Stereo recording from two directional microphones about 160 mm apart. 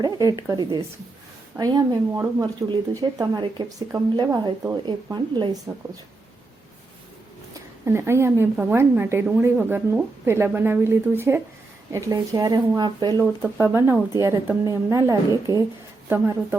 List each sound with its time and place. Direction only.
0.0 s speech: 20° right (ahead or behind)
5.7 s a woman's voice: 15° right (ahead or behind)
7.5 s a woman's voice: 15° right (ahead or behind)
13.6 s a woman's voice: 15° right (ahead or behind)